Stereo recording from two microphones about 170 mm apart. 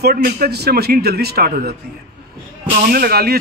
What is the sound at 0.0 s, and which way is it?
A man's voice, 65° right (ahead or behind).